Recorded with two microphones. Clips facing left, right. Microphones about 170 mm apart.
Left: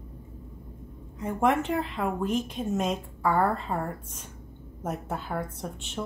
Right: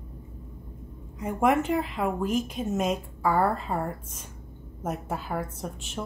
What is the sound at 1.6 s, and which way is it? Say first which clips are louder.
A woman's voice: right 2 dB; 5° right (ahead or behind).